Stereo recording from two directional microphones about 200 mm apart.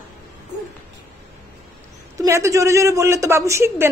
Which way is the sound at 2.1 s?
15° right (ahead or behind).